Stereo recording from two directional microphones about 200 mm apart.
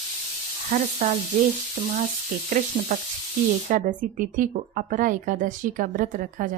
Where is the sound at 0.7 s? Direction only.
40° right (ahead or behind).